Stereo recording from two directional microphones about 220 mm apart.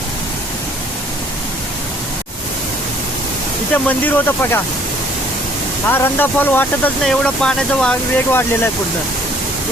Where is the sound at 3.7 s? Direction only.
10° left (ahead or behind).